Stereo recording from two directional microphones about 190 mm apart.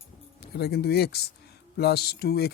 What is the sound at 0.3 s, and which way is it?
Speech, 55° left (ahead or behind).